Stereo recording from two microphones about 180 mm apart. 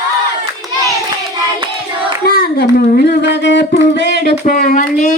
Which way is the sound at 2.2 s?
60° left (ahead or behind).